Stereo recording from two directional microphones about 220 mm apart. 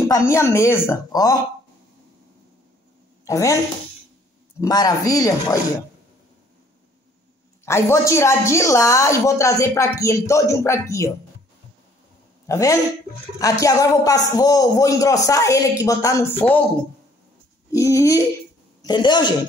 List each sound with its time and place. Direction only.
0.3 s a woman's voice: 15° left (ahead or behind)
3.3 s a woman's voice: 15° left (ahead or behind)
4.6 s a woman's voice: 15° left (ahead or behind)
7.6 s a woman's voice: 10° left (ahead or behind)
12.4 s a man's voice: 15° left (ahead or behind)
17.6 s a woman's voice: 15° left (ahead or behind)